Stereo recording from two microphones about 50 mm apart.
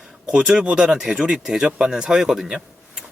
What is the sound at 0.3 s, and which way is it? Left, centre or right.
Speech, centre.